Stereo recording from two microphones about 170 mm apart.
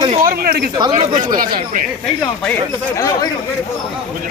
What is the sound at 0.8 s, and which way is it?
Speech, 25° right (ahead or behind).